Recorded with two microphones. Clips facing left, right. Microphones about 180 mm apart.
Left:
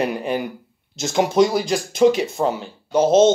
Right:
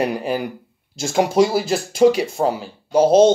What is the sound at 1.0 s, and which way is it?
Speech, 10° right (ahead or behind).